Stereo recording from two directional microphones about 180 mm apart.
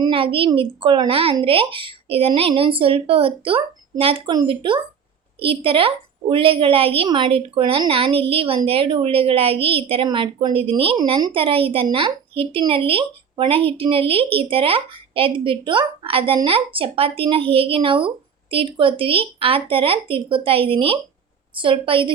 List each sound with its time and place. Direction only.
0.0 s a child's voice: 30° right (ahead or behind)